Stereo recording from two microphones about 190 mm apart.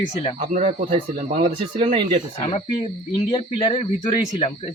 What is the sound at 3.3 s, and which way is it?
Speech, 25° left (ahead or behind).